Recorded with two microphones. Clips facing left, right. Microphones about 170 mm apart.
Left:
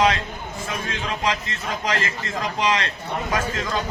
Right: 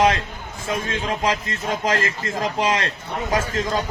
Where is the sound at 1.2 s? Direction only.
45° right (ahead or behind).